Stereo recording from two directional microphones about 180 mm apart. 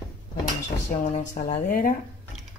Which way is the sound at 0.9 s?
45° left (ahead or behind).